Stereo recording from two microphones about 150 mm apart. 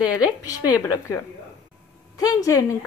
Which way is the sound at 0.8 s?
25° left (ahead or behind).